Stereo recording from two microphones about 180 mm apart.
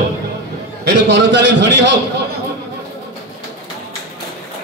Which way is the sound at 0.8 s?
80° right.